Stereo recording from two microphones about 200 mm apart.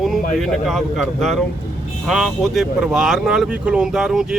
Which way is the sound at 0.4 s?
Centre (ahead or behind).